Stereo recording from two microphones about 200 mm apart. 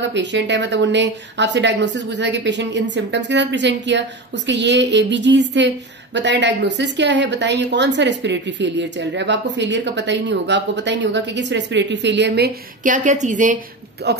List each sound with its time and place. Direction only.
0.1 s speech: 60° right (ahead or behind); by 13.6 s 40° right (ahead or behind)
14.0 s speech: 55° right (ahead or behind)